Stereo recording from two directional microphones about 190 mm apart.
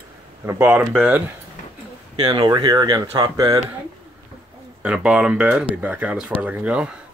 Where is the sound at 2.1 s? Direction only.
25° right (ahead or behind).